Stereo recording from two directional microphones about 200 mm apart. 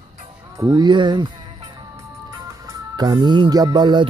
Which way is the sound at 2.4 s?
20° right (ahead or behind).